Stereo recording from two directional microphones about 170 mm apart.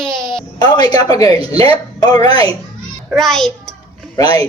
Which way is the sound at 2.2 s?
35° right (ahead or behind).